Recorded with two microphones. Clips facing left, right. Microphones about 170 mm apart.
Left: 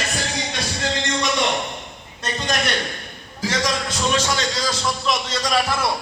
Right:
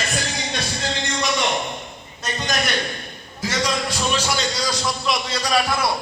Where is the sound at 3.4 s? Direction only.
10° right (ahead or behind).